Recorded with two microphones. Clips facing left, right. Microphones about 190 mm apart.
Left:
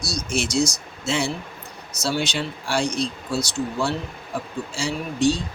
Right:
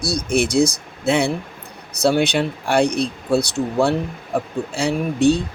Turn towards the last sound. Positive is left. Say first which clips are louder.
# right 5 dB
turn(degrees=-60)  # may be behind; listen again after turning